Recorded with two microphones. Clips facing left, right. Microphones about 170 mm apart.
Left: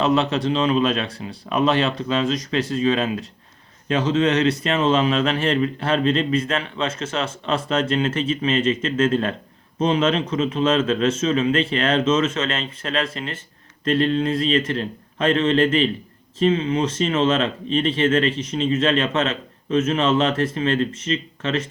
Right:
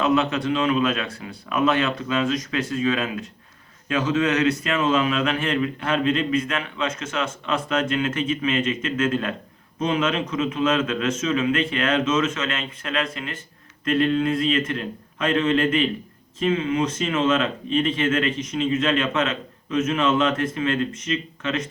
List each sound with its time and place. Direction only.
0.0 s a man's voice: 35° left (ahead or behind)